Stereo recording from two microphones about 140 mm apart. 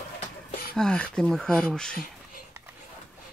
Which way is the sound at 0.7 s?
5° left (ahead or behind).